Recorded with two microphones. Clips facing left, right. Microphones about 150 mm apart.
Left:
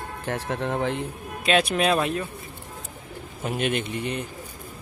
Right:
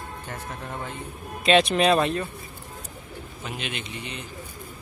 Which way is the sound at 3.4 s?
50° left (ahead or behind).